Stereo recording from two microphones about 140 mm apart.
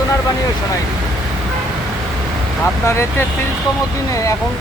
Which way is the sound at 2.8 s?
20° left (ahead or behind).